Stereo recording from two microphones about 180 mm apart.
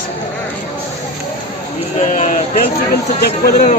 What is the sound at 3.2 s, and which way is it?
Speech, 60° left (ahead or behind).